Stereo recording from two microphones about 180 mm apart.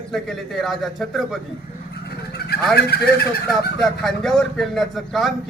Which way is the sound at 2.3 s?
60° left (ahead or behind).